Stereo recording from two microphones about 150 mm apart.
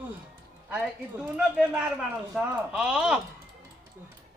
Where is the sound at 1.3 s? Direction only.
10° right (ahead or behind).